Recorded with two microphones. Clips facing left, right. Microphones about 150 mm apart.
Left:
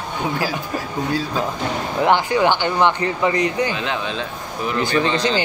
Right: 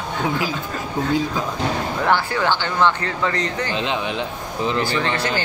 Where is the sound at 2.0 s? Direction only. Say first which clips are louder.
Left 5 dB; 15° left (ahead or behind).